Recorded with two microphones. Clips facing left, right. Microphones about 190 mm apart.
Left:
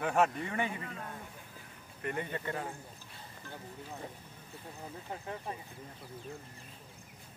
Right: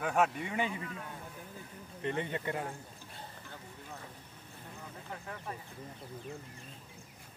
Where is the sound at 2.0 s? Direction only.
20° right (ahead or behind).